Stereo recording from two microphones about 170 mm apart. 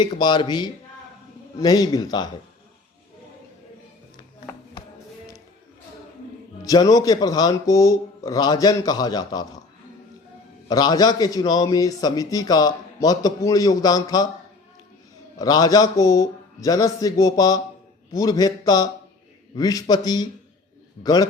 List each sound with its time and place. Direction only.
0.0 s a man's voice: 25° left (ahead or behind)
6.7 s a man's voice: 20° left (ahead or behind)
10.7 s a man's voice: 25° left (ahead or behind)
15.4 s a man's voice: 25° left (ahead or behind)